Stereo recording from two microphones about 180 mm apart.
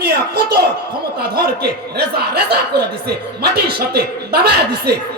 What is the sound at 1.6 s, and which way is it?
Speech, 65° right (ahead or behind).